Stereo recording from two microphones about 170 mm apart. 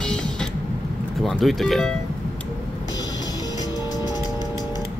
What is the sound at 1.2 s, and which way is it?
Speech, centre (ahead or behind).